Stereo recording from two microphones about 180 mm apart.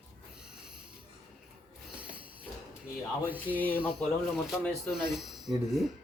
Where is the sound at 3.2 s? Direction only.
10° right (ahead or behind).